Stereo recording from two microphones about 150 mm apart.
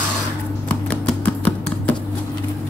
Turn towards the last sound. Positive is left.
turn(degrees=10)  # may be behind; listen again after turning